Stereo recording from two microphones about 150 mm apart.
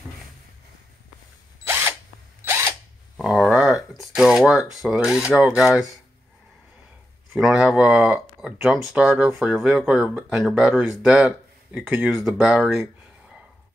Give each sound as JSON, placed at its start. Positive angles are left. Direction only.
{"t": 1.7, "sound": "drill", "side_deg": -15}
{"t": 3.2, "sound": "a sound", "side_deg": 0}
{"t": 3.9, "sound": "speech", "side_deg": 0}
{"t": 7.3, "sound": "speech", "side_deg": -5}